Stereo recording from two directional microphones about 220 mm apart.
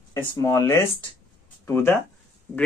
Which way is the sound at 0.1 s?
15° left (ahead or behind).